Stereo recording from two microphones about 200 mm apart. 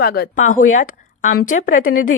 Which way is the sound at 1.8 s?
90° left.